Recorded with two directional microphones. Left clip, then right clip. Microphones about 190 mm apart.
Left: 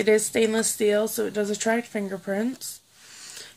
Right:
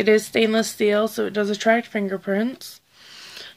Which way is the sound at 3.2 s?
40° right (ahead or behind).